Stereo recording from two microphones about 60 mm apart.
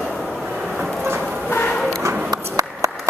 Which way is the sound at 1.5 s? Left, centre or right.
Left.